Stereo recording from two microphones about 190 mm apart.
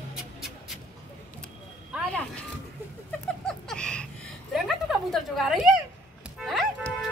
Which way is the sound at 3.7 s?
5° left (ahead or behind).